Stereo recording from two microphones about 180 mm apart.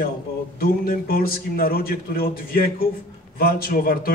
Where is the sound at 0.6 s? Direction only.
55° left (ahead or behind).